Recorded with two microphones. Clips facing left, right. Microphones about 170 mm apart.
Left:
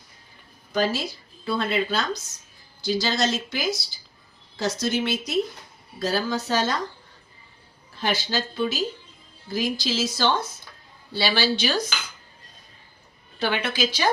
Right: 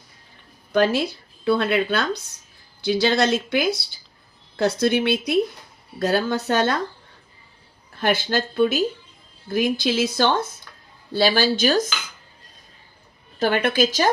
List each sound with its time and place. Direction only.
0.7 s speech: 60° right (ahead or behind)
8.0 s speech: 55° right (ahead or behind)
13.4 s speech: 50° right (ahead or behind)